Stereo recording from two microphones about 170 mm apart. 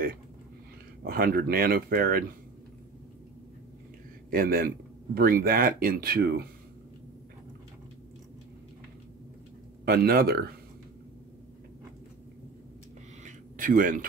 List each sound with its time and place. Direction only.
1.0 s speech: 60° right (ahead or behind)
4.3 s speech: 60° right (ahead or behind)
9.8 s speech: 65° right (ahead or behind)
13.2 s a sound: 55° right (ahead or behind)